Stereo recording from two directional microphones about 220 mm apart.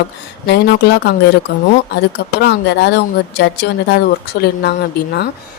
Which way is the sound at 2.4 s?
50° left (ahead or behind).